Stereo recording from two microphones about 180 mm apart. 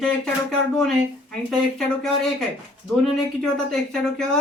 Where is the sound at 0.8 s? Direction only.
Centre (ahead or behind).